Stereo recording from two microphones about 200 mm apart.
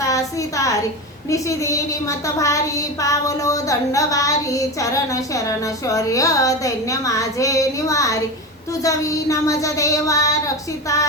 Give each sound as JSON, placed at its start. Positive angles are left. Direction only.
{"t": 0.0, "sound": "a woman's voice", "side_deg": 15}